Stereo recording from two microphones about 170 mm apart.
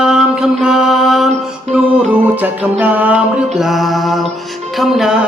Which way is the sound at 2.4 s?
10° right (ahead or behind).